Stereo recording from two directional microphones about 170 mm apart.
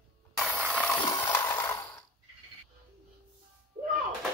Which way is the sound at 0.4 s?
5° right (ahead or behind).